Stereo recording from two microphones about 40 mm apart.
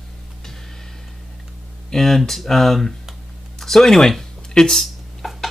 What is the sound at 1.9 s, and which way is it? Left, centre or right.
Speech, centre.